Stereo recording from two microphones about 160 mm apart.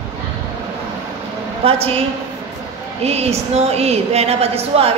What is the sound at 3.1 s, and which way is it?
A woman's voice, 40° right (ahead or behind).